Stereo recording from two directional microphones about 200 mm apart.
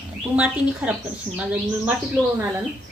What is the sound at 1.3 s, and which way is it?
Speech, 5° right (ahead or behind).